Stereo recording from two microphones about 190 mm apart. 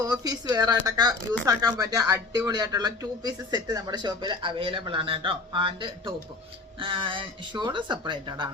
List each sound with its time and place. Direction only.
0.0 s speech: 20° right (ahead or behind)